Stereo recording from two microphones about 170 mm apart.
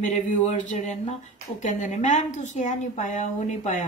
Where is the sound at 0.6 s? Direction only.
45° left (ahead or behind).